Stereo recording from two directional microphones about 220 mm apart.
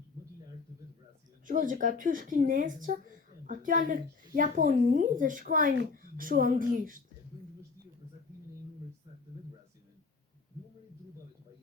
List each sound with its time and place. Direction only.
1.5 s a woman's voice: 35° right (ahead or behind)